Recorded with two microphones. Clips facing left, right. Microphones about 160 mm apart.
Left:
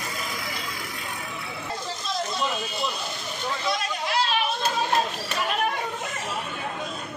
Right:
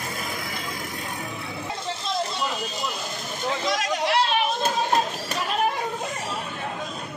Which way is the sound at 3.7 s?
90° right.